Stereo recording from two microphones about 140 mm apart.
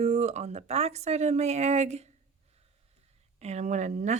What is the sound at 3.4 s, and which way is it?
Speech, 55° right (ahead or behind).